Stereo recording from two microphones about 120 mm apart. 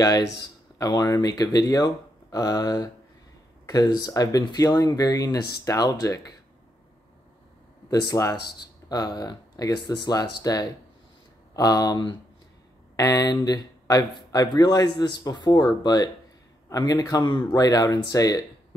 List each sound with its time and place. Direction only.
0.7 s speech: 35° left (ahead or behind)
7.9 s speech: 30° left (ahead or behind)